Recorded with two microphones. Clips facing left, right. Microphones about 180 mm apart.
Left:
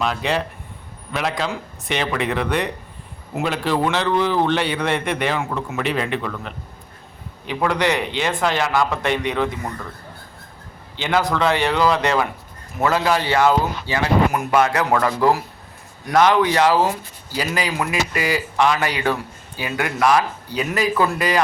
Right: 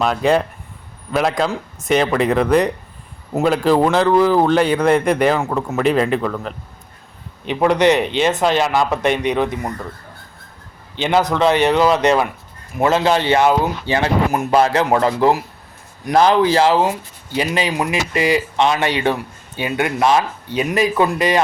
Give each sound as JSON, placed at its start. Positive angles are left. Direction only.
{"t": 0.0, "sound": "a man's voice", "side_deg": -45}
{"t": 7.4, "sound": "speech", "side_deg": -20}
{"t": 10.9, "sound": "speech", "side_deg": -20}